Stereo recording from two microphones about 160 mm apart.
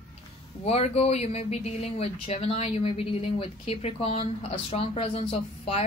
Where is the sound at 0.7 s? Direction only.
40° left (ahead or behind).